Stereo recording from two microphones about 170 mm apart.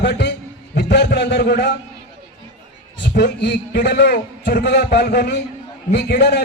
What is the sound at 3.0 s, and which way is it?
A man's voice, 90° left.